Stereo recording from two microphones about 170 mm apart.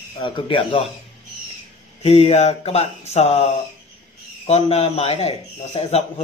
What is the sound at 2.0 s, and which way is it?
A man's voice, 35° left (ahead or behind).